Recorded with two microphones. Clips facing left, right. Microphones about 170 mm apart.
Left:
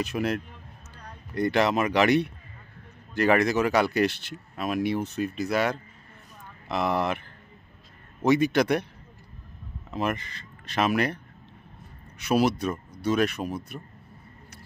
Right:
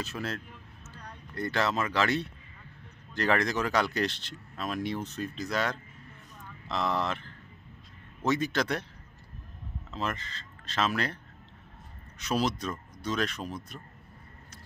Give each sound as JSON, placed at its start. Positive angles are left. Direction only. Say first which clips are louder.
{"t": 0.0, "sound": "speech", "louder": "left 8 dB", "side_deg": 15}
{"t": 9.8, "sound": "speech", "louder": "left 6 dB", "side_deg": 15}
{"t": 12.2, "sound": "speech", "louder": "left 6 dB", "side_deg": 10}